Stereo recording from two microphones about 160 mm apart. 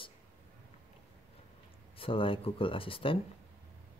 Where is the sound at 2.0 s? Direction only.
35° left (ahead or behind).